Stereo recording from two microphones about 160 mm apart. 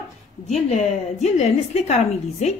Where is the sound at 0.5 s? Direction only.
45° left (ahead or behind).